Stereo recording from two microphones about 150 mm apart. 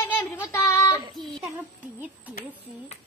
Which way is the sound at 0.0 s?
15° left (ahead or behind).